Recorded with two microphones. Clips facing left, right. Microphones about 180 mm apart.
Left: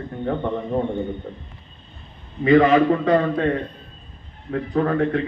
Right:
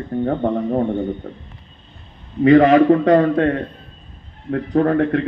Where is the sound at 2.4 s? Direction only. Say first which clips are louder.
Right 4 dB; 40° right (ahead or behind).